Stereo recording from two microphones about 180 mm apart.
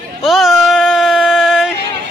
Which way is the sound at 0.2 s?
Centre (ahead or behind).